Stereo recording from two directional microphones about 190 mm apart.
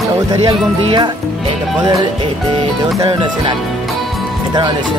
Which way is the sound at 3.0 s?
25° right (ahead or behind).